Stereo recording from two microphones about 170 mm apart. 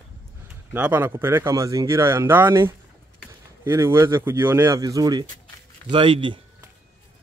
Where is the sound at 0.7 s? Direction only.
10° right (ahead or behind); by 6.4 s 30° right (ahead or behind).